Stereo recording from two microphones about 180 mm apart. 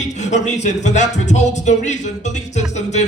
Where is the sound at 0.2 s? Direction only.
40° left (ahead or behind).